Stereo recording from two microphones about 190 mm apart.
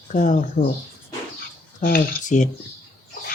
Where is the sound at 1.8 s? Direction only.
50° left (ahead or behind).